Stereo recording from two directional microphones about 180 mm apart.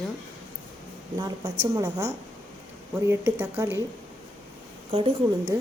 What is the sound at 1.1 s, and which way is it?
A woman's voice, 20° right (ahead or behind).